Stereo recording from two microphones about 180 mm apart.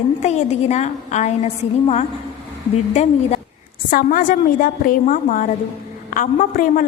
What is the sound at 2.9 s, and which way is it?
Speech, 40° left (ahead or behind).